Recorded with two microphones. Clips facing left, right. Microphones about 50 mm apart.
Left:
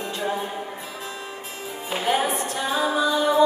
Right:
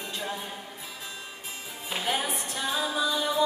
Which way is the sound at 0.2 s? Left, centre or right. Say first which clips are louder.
Left 9 dB; centre.